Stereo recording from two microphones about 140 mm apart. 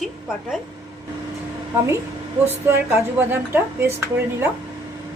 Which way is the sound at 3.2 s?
15° right (ahead or behind).